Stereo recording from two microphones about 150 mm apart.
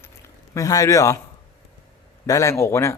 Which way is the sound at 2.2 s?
20° left (ahead or behind).